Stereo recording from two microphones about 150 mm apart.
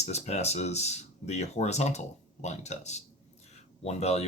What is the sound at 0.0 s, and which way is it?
Speech, 45° left (ahead or behind).